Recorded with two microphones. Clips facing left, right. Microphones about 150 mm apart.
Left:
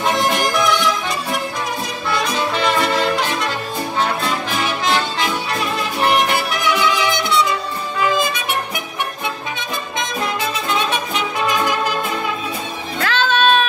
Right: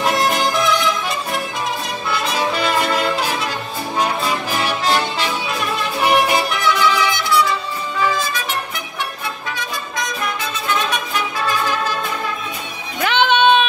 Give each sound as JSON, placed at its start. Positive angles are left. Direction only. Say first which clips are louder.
{"t": 0.0, "sound": "music", "louder": "even", "side_deg": 0}
{"t": 2.0, "sound": "music", "louder": "even", "side_deg": -5}
{"t": 6.0, "sound": "music", "louder": "right 2 dB", "side_deg": -15}
{"t": 6.6, "sound": "music", "louder": "left 1 dB", "side_deg": 20}
{"t": 10.9, "sound": "music", "louder": "left 1 dB", "side_deg": 20}
{"t": 13.0, "sound": "music", "louder": "right 3 dB", "side_deg": -20}